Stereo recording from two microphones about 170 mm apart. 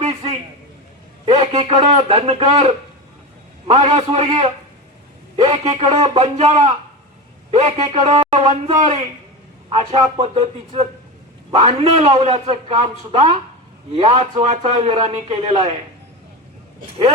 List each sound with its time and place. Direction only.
0.0 s a sound: 45° right (ahead or behind)
1.2 s a man's voice: 35° right (ahead or behind)
3.8 s a man's voice: 35° right (ahead or behind)